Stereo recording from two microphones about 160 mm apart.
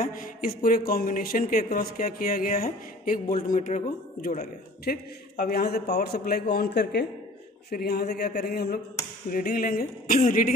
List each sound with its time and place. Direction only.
0.0 s speech: 60° left (ahead or behind); by 4.5 s 45° left (ahead or behind)
4.9 s a sound: 70° left (ahead or behind)
5.4 s a man's voice: 85° left
6.5 s a man's voice: 90° left
8.4 s a sound: 75° left (ahead or behind)
9.3 s speech: 65° left (ahead or behind)